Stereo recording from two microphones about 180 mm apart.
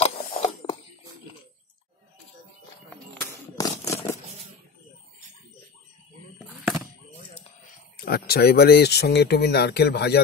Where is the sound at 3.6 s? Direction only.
15° left (ahead or behind).